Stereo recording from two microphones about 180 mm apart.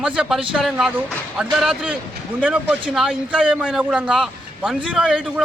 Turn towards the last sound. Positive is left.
turn(degrees=0)  # may be behind; listen again after turning